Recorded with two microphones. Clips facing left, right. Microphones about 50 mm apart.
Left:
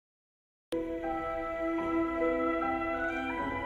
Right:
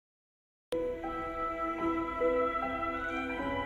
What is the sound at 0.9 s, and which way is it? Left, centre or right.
Music, left.